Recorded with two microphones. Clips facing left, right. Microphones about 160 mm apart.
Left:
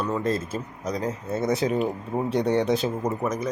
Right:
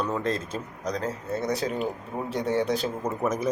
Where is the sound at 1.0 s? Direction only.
20° left (ahead or behind).